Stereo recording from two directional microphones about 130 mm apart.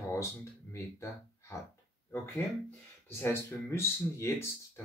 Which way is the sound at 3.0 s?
20° left (ahead or behind).